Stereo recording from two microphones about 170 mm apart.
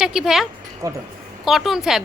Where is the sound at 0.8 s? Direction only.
20° right (ahead or behind).